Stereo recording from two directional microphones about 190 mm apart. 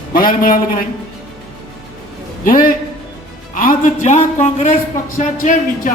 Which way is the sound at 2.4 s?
50° left (ahead or behind).